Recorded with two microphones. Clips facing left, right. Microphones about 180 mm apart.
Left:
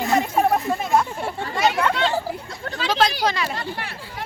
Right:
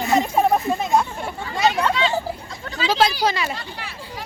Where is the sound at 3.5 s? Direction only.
55° left (ahead or behind).